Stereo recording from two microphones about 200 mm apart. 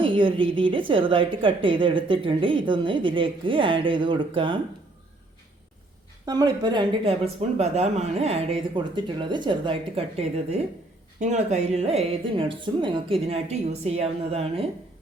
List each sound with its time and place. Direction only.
0.0 s a woman's voice: 25° right (ahead or behind)
6.2 s a woman's voice: 20° right (ahead or behind)
7.6 s a woman's voice: 35° right (ahead or behind)